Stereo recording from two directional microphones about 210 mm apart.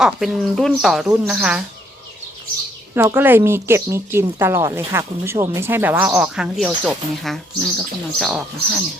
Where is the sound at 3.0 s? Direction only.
10° right (ahead or behind).